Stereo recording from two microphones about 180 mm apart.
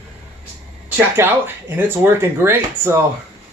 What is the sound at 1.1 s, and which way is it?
Speech, 10° right (ahead or behind).